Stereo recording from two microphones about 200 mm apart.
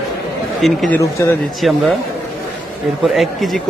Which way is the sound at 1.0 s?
15° left (ahead or behind).